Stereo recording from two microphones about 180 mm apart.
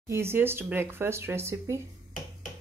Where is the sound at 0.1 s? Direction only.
15° right (ahead or behind).